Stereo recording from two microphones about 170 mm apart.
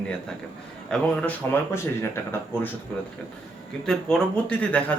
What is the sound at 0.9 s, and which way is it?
Speech, 5° left (ahead or behind).